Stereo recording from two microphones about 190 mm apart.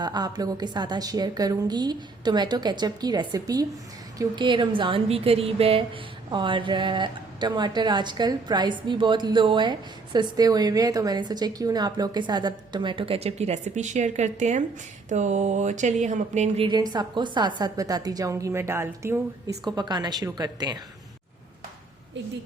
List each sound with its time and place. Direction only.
0.0 s a woman's voice: 20° right (ahead or behind); by 16.6 s 35° right (ahead or behind)
16.9 s a woman's voice: 20° right (ahead or behind)